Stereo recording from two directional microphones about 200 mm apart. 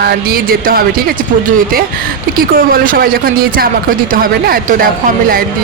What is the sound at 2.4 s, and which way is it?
Speech, 45° right (ahead or behind).